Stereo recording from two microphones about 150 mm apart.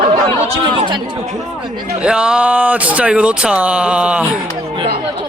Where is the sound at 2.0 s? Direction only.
5° right (ahead or behind).